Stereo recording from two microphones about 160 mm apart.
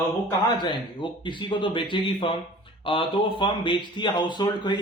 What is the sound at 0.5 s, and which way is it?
Speech, 30° left (ahead or behind).